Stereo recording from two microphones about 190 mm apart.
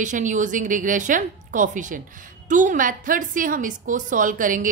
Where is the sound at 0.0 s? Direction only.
40° right (ahead or behind).